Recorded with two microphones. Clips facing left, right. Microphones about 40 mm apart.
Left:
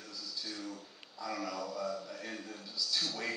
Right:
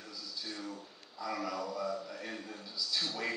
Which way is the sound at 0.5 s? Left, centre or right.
Centre.